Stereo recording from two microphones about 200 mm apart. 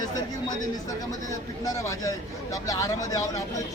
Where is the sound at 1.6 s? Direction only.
15° left (ahead or behind).